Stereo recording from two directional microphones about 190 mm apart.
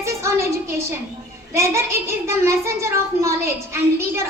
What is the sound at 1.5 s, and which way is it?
Speech, 15° right (ahead or behind).